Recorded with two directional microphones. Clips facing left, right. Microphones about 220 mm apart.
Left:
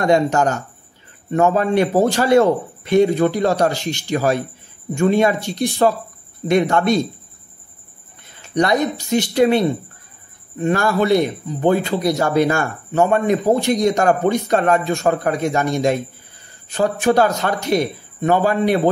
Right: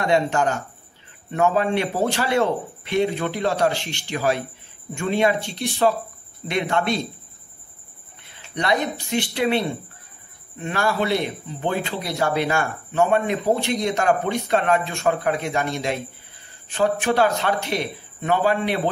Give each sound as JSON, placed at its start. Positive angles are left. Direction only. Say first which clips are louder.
{"t": 0.0, "sound": "speech", "louder": "left 4 dB", "side_deg": 45}
{"t": 8.2, "sound": "speech", "louder": "left 9 dB", "side_deg": 45}
{"t": 10.6, "sound": "a man's voice", "louder": "left 6 dB", "side_deg": 45}